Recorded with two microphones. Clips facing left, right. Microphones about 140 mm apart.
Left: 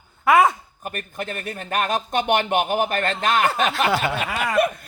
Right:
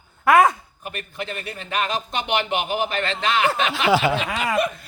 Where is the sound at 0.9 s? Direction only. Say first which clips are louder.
Left 1 dB; 45° left (ahead or behind).